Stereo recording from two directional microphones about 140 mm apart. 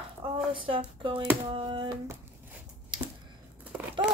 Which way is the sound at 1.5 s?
35° right (ahead or behind).